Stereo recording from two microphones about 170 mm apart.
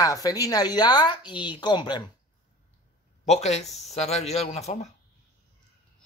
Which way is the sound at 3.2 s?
40° left (ahead or behind).